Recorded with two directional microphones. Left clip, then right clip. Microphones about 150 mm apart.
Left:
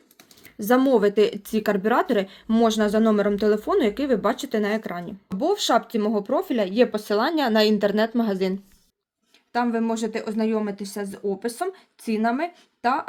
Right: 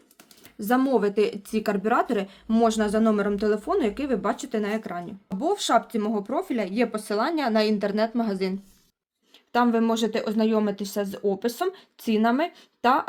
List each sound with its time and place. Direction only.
0.6 s speech: 40° left (ahead or behind)
5.4 s speech: 30° left (ahead or behind)
9.5 s speech: 40° right (ahead or behind)